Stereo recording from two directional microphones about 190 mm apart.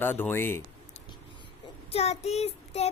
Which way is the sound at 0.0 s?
10° left (ahead or behind).